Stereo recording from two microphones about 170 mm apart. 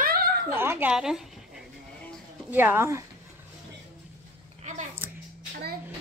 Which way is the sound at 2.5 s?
15° right (ahead or behind).